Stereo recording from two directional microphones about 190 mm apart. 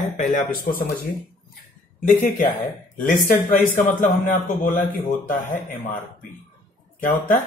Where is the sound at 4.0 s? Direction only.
45° left (ahead or behind).